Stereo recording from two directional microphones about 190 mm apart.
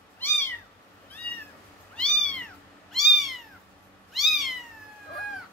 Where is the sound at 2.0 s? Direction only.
5° left (ahead or behind).